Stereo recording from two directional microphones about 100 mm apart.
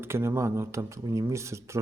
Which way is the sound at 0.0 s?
25° right (ahead or behind).